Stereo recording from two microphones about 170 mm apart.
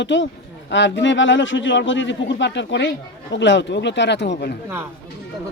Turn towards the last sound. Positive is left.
turn(degrees=80)